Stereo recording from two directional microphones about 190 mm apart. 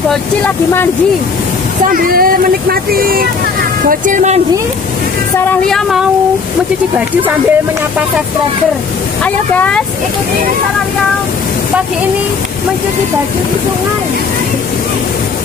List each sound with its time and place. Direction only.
0.1 s speech: 5° left (ahead or behind)
1.9 s speech: 50° right (ahead or behind)
5.4 s speech: 5° left (ahead or behind)
9.2 s speech: 5° left (ahead or behind)